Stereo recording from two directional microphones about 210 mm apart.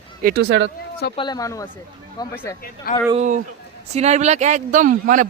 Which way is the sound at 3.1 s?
35° right (ahead or behind).